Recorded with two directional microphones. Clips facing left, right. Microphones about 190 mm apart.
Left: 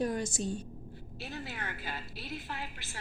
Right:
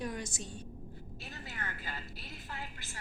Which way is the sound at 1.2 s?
80° left.